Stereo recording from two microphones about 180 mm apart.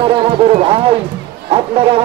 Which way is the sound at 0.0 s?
30° right (ahead or behind).